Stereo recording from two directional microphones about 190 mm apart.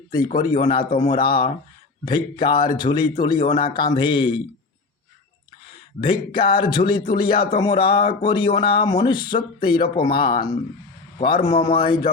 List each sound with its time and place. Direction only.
0.4 s speech: 25° left (ahead or behind)
6.0 s speech: 25° left (ahead or behind)